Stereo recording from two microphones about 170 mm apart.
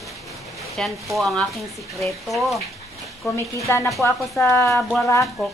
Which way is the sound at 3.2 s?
15° left (ahead or behind).